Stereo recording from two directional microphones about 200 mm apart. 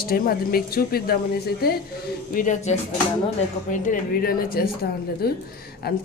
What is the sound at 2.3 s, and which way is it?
A woman's voice, 40° left (ahead or behind).